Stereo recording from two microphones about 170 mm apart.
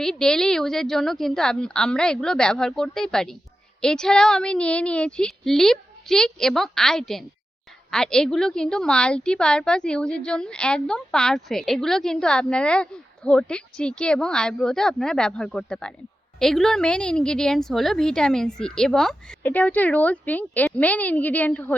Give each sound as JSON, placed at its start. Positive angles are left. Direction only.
{"t": 0.0, "sound": "a woman's voice", "side_deg": 5}